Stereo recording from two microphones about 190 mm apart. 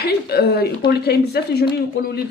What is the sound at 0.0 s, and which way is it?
Speech, 55° left (ahead or behind).